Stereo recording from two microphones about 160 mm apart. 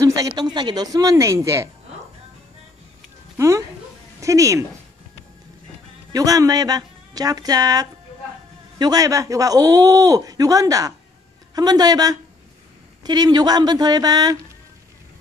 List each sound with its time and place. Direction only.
0.0 s a sound: 20° right (ahead or behind)
0.4 s speech: 25° right (ahead or behind)
3.3 s speech: 20° right (ahead or behind)
6.1 s speech: 20° right (ahead or behind)